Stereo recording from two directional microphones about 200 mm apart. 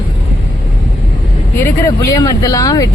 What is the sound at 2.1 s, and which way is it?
Speech, 20° left (ahead or behind).